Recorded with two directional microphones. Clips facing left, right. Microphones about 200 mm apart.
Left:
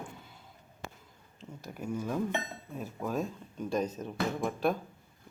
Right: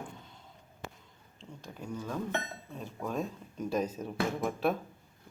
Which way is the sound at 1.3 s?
5° left (ahead or behind).